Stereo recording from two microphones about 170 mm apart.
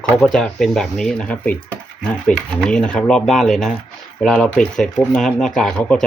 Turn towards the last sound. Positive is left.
turn(degrees=5)  # may be behind; listen again after turning